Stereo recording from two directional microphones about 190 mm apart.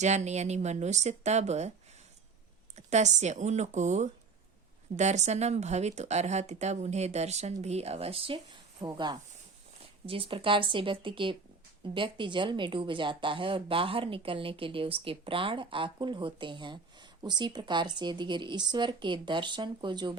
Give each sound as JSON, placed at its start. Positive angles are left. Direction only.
{"t": 0.0, "sound": "speech", "side_deg": -35}
{"t": 2.7, "sound": "speech", "side_deg": -35}